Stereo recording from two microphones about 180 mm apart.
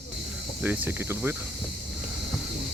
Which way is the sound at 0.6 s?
10° right (ahead or behind).